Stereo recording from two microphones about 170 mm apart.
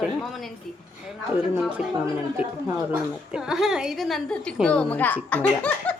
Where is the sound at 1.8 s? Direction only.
5° right (ahead or behind).